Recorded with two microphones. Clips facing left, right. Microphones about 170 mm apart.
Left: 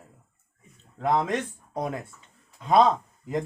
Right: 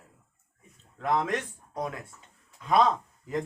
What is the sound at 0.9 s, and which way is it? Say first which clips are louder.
A man's voice: left 3 dB; 25° left (ahead or behind).